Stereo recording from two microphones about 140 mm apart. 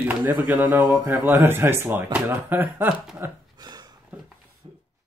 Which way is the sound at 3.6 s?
30° right (ahead or behind).